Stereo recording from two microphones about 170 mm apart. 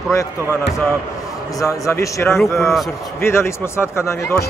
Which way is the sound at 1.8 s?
15° left (ahead or behind).